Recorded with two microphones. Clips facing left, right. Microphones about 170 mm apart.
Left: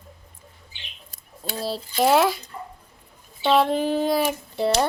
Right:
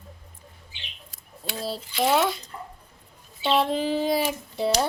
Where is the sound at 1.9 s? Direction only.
40° left (ahead or behind).